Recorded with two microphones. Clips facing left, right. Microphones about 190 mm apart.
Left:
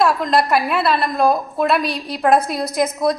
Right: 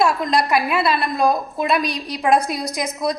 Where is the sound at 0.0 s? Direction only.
Centre (ahead or behind).